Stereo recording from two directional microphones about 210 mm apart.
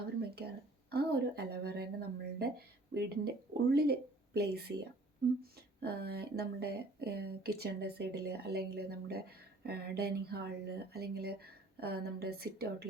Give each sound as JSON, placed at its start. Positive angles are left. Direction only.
{"t": 0.3, "sound": "speech", "side_deg": -50}